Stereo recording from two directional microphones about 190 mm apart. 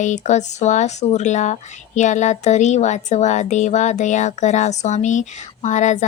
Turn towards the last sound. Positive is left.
turn(degrees=40)  # may be behind; listen again after turning